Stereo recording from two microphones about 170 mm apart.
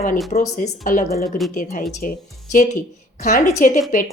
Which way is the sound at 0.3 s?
45° left (ahead or behind).